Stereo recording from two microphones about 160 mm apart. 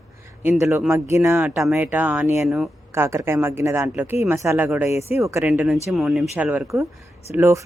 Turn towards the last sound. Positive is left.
turn(degrees=-15)  # may be behind; listen again after turning